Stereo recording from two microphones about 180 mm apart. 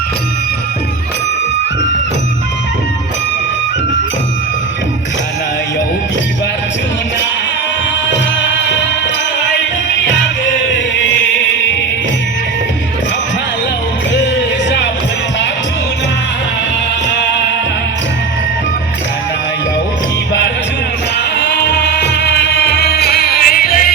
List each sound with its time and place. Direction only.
21.3 s music: 70° left (ahead or behind); by 23.9 s 55° left (ahead or behind)